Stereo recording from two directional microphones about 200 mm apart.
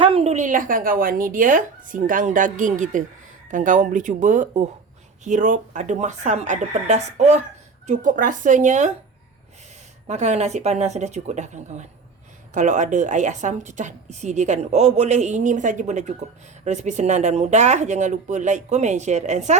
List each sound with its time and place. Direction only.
0.0 s a woman's voice: 30° right (ahead or behind)
10.1 s a woman's voice: 35° right (ahead or behind)